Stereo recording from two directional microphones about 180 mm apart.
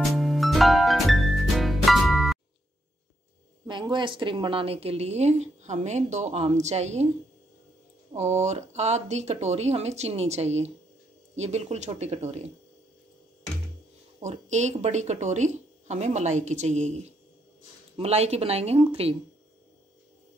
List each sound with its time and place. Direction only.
0.0 s music: centre (ahead or behind)
3.6 s a woman's voice: 25° right (ahead or behind)
8.1 s a woman's voice: 40° right (ahead or behind)
14.2 s a woman's voice: 40° right (ahead or behind)
17.9 s a woman's voice: 35° right (ahead or behind)